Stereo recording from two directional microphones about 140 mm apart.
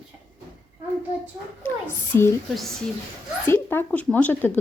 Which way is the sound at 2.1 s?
15° left (ahead or behind).